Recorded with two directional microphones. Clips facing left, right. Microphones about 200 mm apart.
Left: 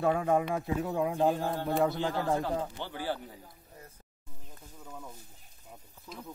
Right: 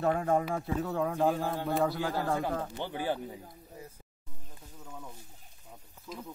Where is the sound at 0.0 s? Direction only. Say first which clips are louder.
Left 1 dB; 15° left (ahead or behind).